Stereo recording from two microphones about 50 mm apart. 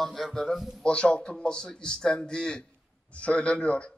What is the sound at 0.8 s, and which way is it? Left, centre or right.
A man's voice, left.